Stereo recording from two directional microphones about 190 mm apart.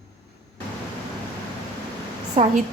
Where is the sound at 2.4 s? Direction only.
30° right (ahead or behind).